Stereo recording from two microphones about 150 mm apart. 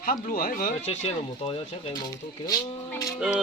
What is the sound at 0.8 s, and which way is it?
Speech, 40° left (ahead or behind).